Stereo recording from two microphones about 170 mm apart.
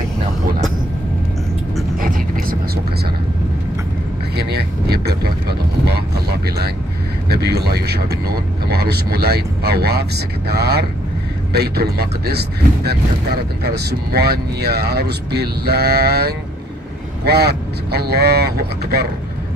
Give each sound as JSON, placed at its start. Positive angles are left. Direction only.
{"t": 2.0, "sound": "vehicle", "side_deg": -50}
{"t": 4.4, "sound": "vehicle", "side_deg": -70}
{"t": 7.2, "sound": "speech", "side_deg": -70}